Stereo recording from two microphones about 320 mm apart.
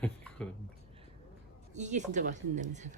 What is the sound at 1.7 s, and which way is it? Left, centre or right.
Speech, right.